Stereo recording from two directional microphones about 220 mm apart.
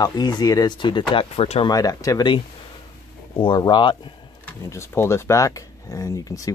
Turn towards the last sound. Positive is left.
turn(degrees=15)  # may be behind; listen again after turning